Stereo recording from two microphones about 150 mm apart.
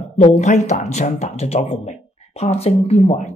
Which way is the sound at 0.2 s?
50° left (ahead or behind).